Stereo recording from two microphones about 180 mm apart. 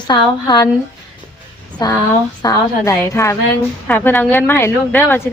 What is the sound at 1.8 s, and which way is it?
A woman's voice, 20° left (ahead or behind).